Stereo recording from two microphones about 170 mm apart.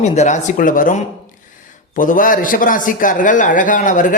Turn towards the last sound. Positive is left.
turn(degrees=50)  # may be behind; listen again after turning